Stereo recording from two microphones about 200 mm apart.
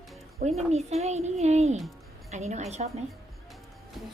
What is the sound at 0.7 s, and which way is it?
A woman's voice, 35° right (ahead or behind).